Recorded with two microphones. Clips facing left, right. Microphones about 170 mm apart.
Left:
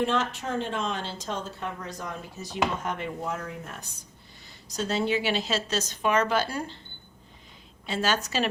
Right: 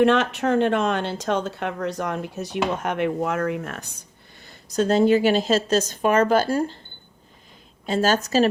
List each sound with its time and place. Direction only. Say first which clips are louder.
0.0 s speech: right 9 dB; 70° right (ahead or behind)
4.4 s a woman's voice: right 10 dB; 55° right (ahead or behind)
7.9 s a woman's voice: right 7 dB; 45° right (ahead or behind)